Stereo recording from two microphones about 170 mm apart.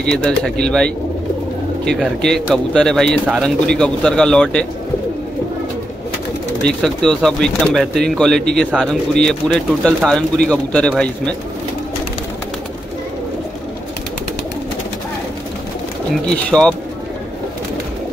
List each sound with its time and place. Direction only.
0.0 s speech: 5° left (ahead or behind)
6.6 s speech: 5° left (ahead or behind)
16.4 s speech: 5° left (ahead or behind)